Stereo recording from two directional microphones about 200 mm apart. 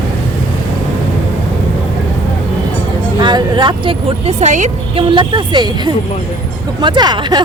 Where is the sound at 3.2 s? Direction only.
20° right (ahead or behind).